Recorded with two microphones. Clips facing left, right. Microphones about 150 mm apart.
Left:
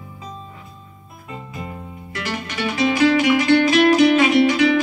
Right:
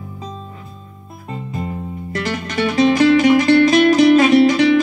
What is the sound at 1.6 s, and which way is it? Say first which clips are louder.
Music: right 7 dB; 35° right (ahead or behind).